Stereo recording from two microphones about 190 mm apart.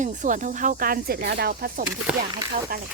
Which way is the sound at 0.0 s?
40° right (ahead or behind).